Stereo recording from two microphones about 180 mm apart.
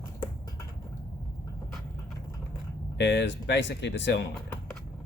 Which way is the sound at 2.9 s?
75° left (ahead or behind).